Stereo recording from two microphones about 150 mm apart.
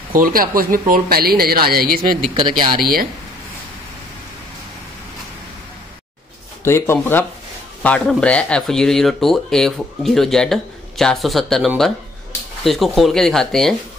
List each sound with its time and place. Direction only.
0.1 s a woman's voice: 70° right (ahead or behind)
6.6 s speech: 15° left (ahead or behind)